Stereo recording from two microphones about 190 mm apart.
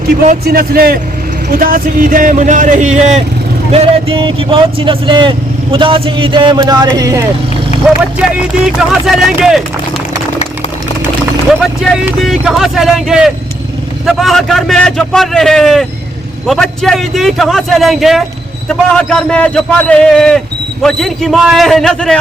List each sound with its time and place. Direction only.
0.4 s speech: 50° right (ahead or behind); by 7.3 s 15° right (ahead or behind)
7.9 s a man's voice: 5° right (ahead or behind)
11.8 s a man's voice: centre (ahead or behind)